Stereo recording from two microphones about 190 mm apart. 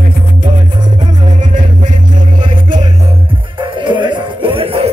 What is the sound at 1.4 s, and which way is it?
Music, 45° right (ahead or behind).